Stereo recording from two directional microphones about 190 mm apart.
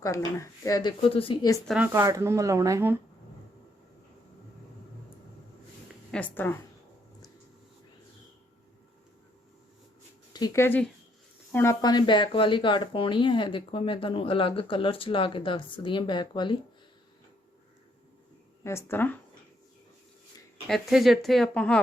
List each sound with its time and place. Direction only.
0.0 s speech: 15° left (ahead or behind)
1.6 s speech: 5° right (ahead or behind)
1.9 s speech: 15° right (ahead or behind)
6.1 s speech: 5° left (ahead or behind)
10.3 s speech: 15° left (ahead or behind)
18.6 s speech: 15° left (ahead or behind)
20.7 s speech: centre (ahead or behind)